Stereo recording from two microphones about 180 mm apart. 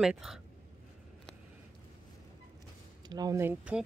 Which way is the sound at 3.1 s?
20° right (ahead or behind).